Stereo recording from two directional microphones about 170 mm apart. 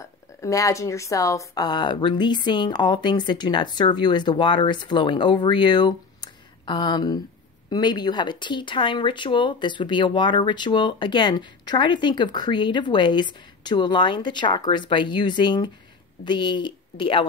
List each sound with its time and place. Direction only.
0.0 s speech: 20° left (ahead or behind)